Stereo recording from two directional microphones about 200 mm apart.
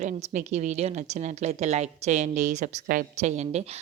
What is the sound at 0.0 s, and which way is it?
A woman's voice, 35° right (ahead or behind).